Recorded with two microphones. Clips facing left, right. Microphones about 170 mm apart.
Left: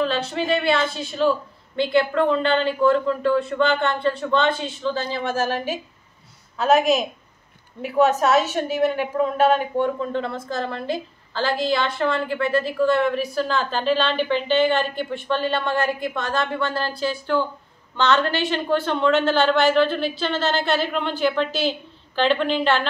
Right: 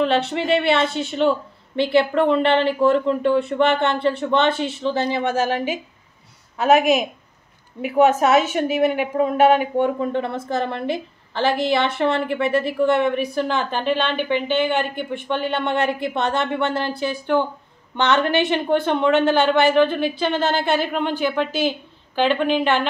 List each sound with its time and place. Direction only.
0.0 s a woman's voice: 25° right (ahead or behind)
7.8 s a woman's voice: 15° right (ahead or behind)